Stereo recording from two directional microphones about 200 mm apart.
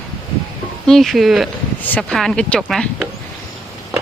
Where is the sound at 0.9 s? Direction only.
Centre (ahead or behind).